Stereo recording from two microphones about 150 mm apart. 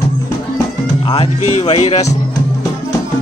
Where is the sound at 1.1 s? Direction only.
40° left (ahead or behind).